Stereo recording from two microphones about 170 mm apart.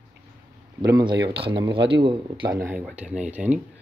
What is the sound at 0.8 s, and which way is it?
Speech, 25° right (ahead or behind).